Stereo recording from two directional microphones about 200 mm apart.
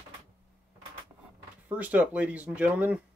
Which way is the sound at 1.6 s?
5° right (ahead or behind).